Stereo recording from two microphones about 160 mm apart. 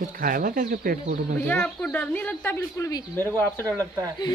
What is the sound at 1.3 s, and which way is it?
Speech, 10° left (ahead or behind).